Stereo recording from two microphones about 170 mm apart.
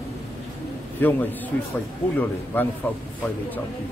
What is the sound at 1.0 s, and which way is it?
Speech, 10° left (ahead or behind).